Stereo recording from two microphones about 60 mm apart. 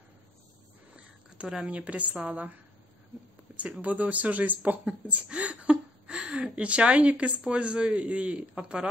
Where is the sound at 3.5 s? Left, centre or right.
Right.